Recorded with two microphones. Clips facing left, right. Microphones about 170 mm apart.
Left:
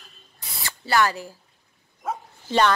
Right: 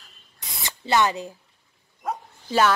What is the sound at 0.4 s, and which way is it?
Spray, 20° right (ahead or behind).